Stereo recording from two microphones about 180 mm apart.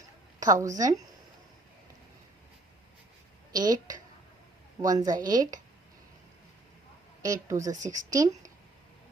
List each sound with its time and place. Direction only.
0.3 s a woman's voice: 20° right (ahead or behind)
3.5 s a woman's voice: 20° right (ahead or behind)
7.2 s a woman's voice: 20° right (ahead or behind)